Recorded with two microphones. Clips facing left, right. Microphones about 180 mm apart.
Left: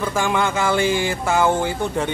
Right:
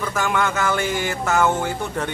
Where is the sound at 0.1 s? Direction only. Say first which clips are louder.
Even; 25° left (ahead or behind).